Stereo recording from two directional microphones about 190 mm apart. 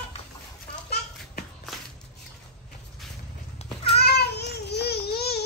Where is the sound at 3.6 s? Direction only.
35° left (ahead or behind).